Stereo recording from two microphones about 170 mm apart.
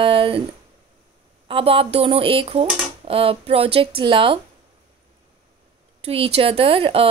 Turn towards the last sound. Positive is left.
turn(degrees=-35)  # may be behind; listen again after turning